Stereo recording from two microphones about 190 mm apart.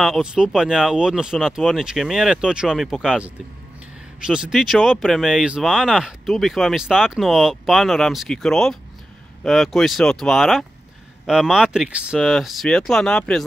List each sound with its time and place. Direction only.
0.0 s speech: centre (ahead or behind)